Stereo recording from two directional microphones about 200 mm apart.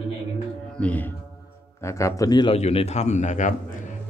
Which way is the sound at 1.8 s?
15° left (ahead or behind).